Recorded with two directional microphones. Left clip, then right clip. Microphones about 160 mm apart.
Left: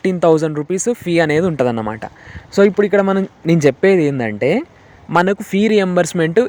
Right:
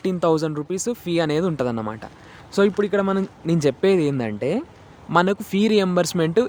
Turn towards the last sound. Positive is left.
turn(degrees=15)  # may be behind; listen again after turning